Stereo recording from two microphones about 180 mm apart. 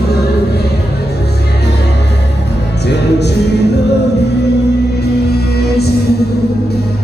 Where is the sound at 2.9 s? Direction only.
70° left (ahead or behind).